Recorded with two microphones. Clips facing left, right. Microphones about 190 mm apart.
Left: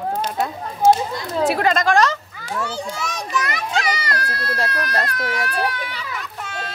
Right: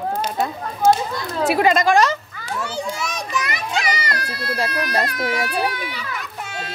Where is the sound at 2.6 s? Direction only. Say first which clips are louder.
Right 1 dB; 10° right (ahead or behind).